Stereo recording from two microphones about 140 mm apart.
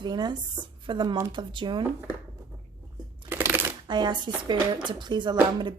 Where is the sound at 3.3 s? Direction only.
20° right (ahead or behind).